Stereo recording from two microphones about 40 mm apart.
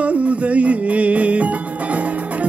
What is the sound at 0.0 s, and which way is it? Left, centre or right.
Music, right.